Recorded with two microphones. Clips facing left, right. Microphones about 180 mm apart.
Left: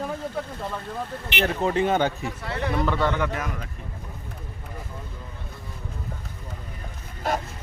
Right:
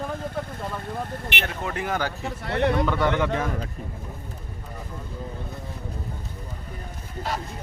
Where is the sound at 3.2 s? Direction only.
25° right (ahead or behind).